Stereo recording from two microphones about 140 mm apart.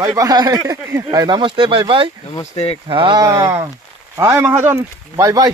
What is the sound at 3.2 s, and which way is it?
Speech, 25° right (ahead or behind).